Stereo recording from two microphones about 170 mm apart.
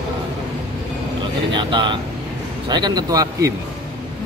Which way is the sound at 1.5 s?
30° right (ahead or behind).